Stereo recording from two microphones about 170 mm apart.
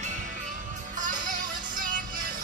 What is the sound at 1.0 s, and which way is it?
Music, 50° right (ahead or behind).